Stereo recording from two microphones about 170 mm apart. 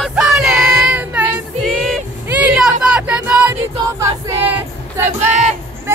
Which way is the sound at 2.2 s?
10° right (ahead or behind).